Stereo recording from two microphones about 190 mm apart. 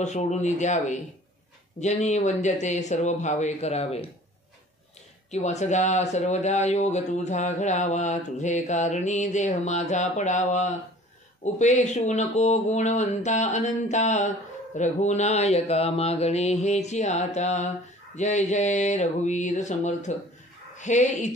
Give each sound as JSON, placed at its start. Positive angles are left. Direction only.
{"t": 0.0, "sound": "speech", "side_deg": 40}
{"t": 5.3, "sound": "speech", "side_deg": 35}